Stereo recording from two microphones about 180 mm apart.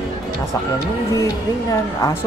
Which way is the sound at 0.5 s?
20° left (ahead or behind).